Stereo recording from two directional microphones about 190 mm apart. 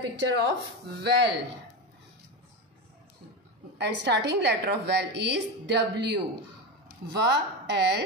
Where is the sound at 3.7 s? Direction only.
65° right (ahead or behind).